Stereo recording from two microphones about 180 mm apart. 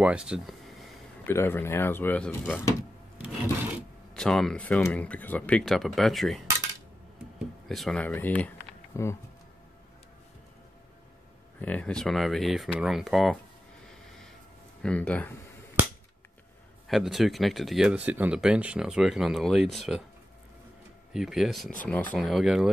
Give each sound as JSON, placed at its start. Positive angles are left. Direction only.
{"t": 0.0, "sound": "speech", "side_deg": -5}
{"t": 1.2, "sound": "speech", "side_deg": 10}
{"t": 11.6, "sound": "speech", "side_deg": 5}
{"t": 14.8, "sound": "speech", "side_deg": 5}
{"t": 16.8, "sound": "speech", "side_deg": 0}
{"t": 21.1, "sound": "speech", "side_deg": 0}